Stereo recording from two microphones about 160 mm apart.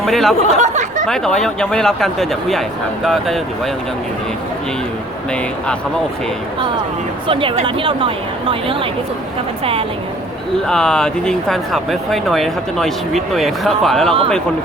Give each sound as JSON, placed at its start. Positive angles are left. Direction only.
{"t": 0.0, "sound": "speech", "side_deg": 0}
{"t": 0.6, "sound": "speech", "side_deg": -50}
{"t": 1.0, "sound": "speech", "side_deg": 5}
{"t": 7.3, "sound": "a woman's voice", "side_deg": -35}
{"t": 10.7, "sound": "speech", "side_deg": 5}